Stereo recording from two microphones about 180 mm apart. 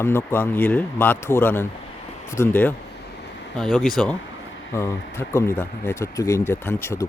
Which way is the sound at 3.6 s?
Centre (ahead or behind).